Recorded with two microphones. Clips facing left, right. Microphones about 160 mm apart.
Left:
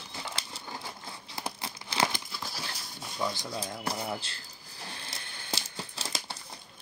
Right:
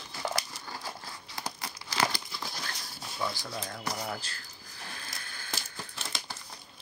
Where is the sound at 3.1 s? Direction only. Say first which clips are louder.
Left 2 dB; 15° left (ahead or behind).